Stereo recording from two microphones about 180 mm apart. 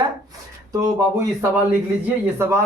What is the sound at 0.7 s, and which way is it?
A man's voice, 15° right (ahead or behind).